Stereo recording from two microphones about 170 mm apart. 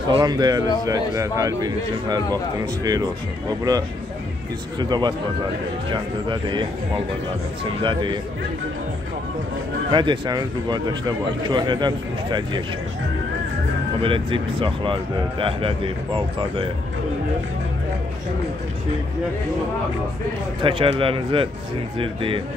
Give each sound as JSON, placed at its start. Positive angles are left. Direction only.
{"t": 0.1, "sound": "speech", "side_deg": -25}
{"t": 6.2, "sound": "speech", "side_deg": -30}
{"t": 7.8, "sound": "speech", "side_deg": -30}
{"t": 9.8, "sound": "speech", "side_deg": -25}
{"t": 14.0, "sound": "speech", "side_deg": -30}
{"t": 20.6, "sound": "speech", "side_deg": -30}